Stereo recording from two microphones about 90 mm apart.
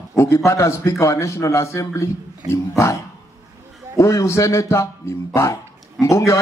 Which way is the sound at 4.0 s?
35° left (ahead or behind).